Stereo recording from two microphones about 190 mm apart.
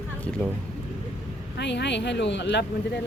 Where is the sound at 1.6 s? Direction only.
65° left (ahead or behind).